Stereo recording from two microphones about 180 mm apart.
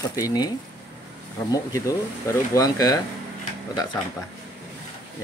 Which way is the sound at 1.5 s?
15° left (ahead or behind).